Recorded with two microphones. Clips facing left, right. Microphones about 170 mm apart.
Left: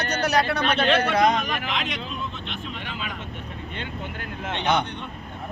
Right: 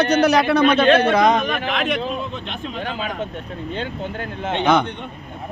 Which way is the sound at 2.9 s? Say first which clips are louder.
Right 9 dB; 40° right (ahead or behind).